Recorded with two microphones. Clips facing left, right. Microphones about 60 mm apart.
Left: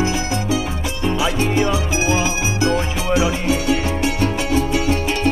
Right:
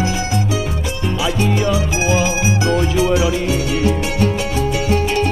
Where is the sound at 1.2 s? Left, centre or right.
Centre.